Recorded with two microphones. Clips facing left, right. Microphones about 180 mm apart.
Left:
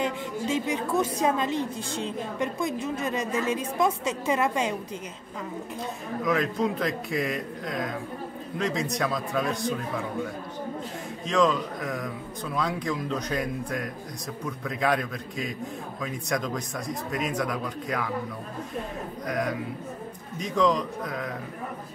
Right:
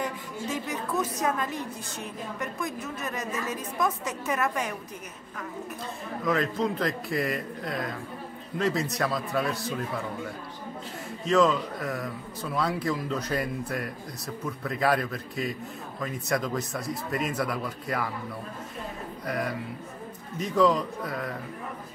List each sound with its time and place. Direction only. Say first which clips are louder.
0.0 s a woman's voice: left 4 dB; 25° left (ahead or behind)
6.2 s speech: left 1 dB; centre (ahead or behind)
11.2 s speech: right 1 dB; centre (ahead or behind)
19.2 s speech: left 2 dB; 5° right (ahead or behind)